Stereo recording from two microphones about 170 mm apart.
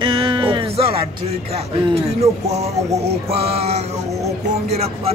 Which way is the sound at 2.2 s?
40° right (ahead or behind).